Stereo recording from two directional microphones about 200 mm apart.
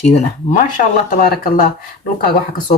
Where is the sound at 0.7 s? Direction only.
45° left (ahead or behind).